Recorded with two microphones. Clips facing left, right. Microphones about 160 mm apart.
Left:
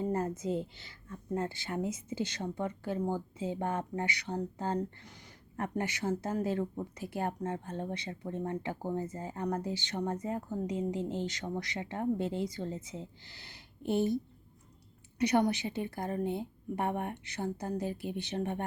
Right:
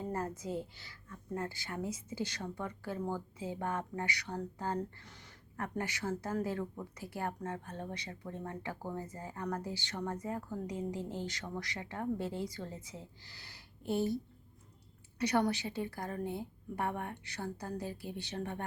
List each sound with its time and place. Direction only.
0.1 s a woman's voice: 20° left (ahead or behind)
15.2 s a woman's voice: 20° left (ahead or behind)